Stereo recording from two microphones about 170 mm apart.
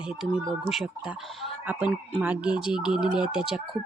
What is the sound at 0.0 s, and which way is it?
Speech, 5° right (ahead or behind).